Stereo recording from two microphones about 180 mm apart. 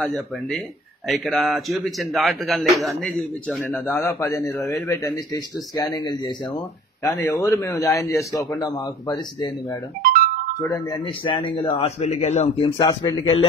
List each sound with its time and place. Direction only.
0.0 s a man's voice: 5° left (ahead or behind); by 7.1 s 25° left (ahead or behind)
7.1 s a man's voice: 10° left (ahead or behind)
11.3 s a man's voice: 25° left (ahead or behind)